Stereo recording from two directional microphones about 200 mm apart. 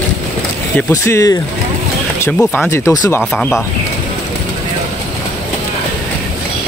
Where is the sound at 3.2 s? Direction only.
Centre (ahead or behind).